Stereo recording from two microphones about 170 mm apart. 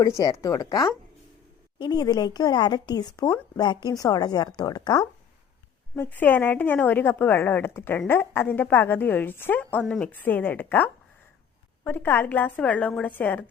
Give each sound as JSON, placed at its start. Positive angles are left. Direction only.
{"t": 0.2, "sound": "speech", "side_deg": 20}
{"t": 6.0, "sound": "a woman's voice", "side_deg": 10}